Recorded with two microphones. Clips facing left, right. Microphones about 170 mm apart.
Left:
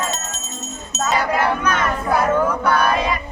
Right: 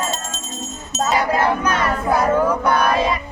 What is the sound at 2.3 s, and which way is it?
Music, 15° right (ahead or behind).